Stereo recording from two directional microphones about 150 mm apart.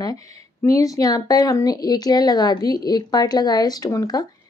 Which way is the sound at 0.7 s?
20° left (ahead or behind).